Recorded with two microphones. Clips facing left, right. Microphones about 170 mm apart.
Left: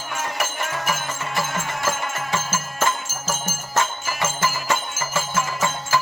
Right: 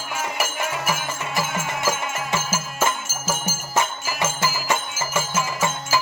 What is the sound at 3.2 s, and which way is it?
Music, 10° right (ahead or behind).